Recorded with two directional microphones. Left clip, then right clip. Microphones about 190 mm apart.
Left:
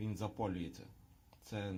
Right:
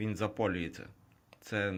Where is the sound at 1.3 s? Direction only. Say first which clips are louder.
Right 11 dB; 20° right (ahead or behind).